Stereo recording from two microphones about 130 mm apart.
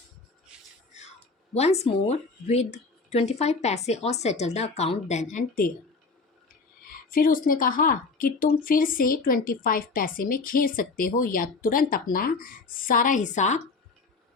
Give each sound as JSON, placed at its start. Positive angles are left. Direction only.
{"t": 1.5, "sound": "speech", "side_deg": 55}
{"t": 6.8, "sound": "a woman's voice", "side_deg": 90}